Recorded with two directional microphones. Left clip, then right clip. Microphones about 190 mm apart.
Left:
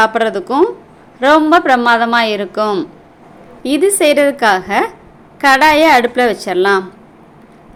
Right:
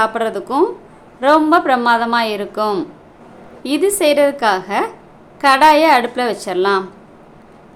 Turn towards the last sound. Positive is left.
turn(degrees=15)  # may be behind; listen again after turning